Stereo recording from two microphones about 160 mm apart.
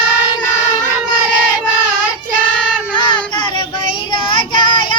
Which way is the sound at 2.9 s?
30° left (ahead or behind).